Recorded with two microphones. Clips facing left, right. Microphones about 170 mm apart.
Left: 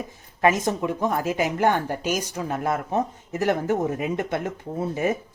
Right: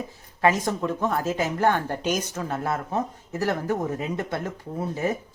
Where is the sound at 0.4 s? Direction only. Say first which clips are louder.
Left 1 dB; 20° left (ahead or behind).